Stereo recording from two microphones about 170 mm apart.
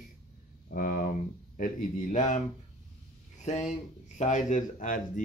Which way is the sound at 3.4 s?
40° left (ahead or behind).